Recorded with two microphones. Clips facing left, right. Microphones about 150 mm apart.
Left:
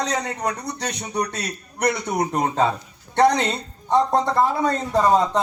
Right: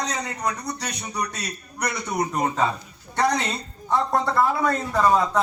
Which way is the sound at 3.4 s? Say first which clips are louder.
Left 4 dB; 20° left (ahead or behind).